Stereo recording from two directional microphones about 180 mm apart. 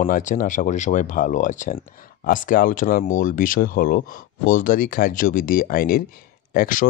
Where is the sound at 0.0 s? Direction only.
45° left (ahead or behind).